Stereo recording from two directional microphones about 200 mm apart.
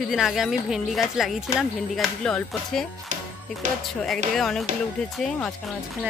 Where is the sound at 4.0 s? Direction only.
Centre (ahead or behind).